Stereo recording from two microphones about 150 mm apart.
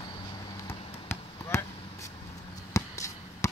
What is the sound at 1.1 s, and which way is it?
Basketball bounce, 15° left (ahead or behind).